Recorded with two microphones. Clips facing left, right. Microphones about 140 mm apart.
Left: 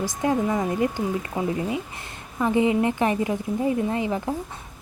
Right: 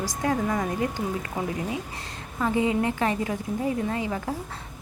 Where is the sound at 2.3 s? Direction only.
20° left (ahead or behind).